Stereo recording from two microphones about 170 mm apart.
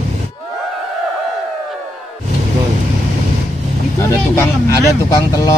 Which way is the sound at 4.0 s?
15° left (ahead or behind).